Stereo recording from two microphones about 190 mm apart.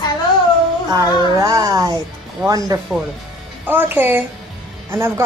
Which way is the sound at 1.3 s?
20° right (ahead or behind).